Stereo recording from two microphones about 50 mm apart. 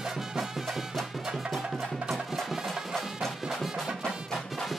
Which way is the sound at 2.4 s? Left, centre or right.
Centre.